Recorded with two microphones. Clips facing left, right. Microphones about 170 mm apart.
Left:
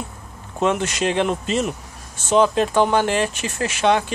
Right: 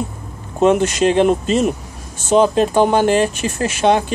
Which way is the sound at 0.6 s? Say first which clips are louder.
Right 7 dB; 40° right (ahead or behind).